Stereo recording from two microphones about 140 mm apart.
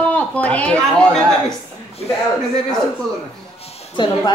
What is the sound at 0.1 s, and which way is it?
Speech, 10° left (ahead or behind).